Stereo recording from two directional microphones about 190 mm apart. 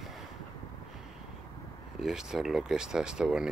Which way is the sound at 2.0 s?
Centre (ahead or behind).